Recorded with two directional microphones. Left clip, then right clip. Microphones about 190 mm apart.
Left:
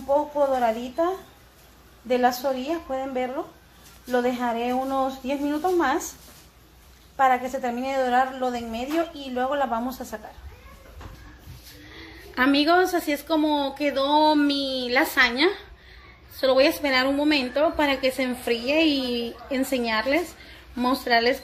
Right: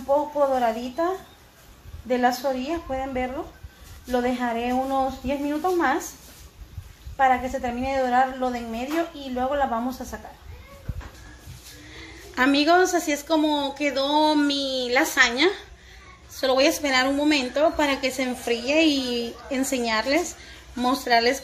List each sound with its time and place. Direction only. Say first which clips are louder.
0.1 s a woman's voice: right 1 dB; 5° left (ahead or behind)
7.2 s a woman's voice: even; 15° left (ahead or behind)
11.9 s a woman's voice: even; 10° left (ahead or behind)